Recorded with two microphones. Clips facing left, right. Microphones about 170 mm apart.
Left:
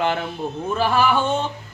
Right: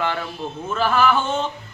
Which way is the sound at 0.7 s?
15° left (ahead or behind).